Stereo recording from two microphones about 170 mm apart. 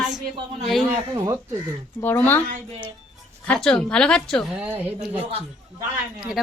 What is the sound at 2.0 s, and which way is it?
Speech, 10° left (ahead or behind).